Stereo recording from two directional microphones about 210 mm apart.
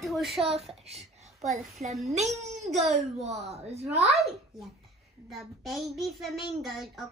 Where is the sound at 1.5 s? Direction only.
30° right (ahead or behind).